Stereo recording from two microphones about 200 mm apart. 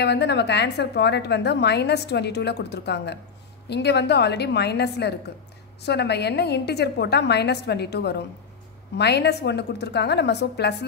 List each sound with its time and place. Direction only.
0.0 s a woman's voice: 60° left (ahead or behind)